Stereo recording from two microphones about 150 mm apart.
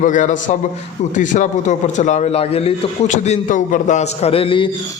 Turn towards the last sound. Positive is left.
turn(degrees=35)  # may be behind; listen again after turning